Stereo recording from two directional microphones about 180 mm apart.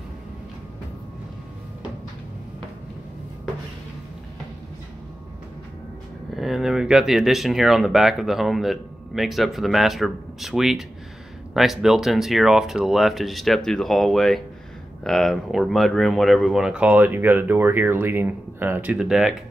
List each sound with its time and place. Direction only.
6.3 s speech: centre (ahead or behind)